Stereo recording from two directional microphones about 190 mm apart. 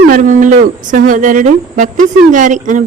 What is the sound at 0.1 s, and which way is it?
Speech, 45° right (ahead or behind).